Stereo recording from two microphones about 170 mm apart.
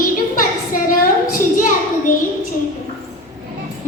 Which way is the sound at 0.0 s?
55° left (ahead or behind).